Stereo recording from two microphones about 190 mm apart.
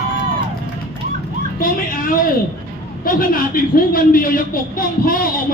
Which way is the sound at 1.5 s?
50° left (ahead or behind).